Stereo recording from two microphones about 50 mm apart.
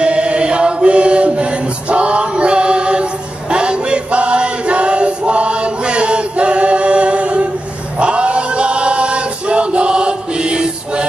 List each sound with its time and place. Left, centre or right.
0.0 s chant: right
8.0 s male singing: right